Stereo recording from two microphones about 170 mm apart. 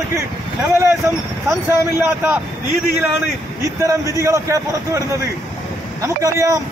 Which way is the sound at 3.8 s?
15° right (ahead or behind).